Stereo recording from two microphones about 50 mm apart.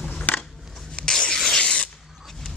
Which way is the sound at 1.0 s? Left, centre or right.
Centre.